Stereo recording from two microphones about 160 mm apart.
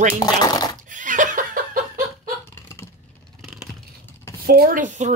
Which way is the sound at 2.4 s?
15° left (ahead or behind).